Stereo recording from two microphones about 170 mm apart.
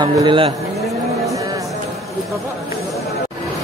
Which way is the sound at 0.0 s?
25° right (ahead or behind).